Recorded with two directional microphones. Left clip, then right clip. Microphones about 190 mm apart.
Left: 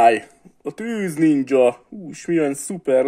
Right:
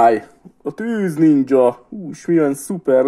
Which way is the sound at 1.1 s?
5° left (ahead or behind).